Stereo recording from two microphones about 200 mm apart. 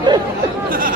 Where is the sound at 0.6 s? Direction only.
45° right (ahead or behind).